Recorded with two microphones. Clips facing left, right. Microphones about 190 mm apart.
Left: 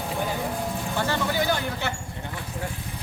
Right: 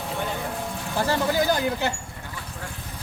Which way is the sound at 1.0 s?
40° right (ahead or behind).